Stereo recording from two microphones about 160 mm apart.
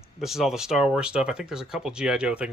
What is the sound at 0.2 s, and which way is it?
Speech, centre (ahead or behind).